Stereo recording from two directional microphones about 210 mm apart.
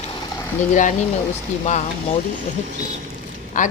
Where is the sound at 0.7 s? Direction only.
35° left (ahead or behind).